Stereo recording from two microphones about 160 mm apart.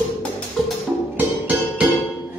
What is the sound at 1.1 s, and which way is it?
Music, 10° right (ahead or behind).